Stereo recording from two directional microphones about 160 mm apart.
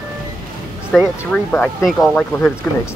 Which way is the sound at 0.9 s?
5° left (ahead or behind).